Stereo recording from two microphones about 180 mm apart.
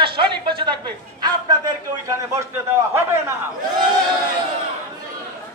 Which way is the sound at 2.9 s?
15° right (ahead or behind).